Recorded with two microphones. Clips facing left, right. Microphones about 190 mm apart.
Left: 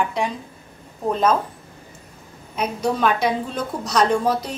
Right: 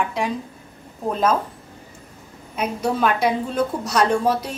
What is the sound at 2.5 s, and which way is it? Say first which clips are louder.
A woman's voice: even; 5° right (ahead or behind).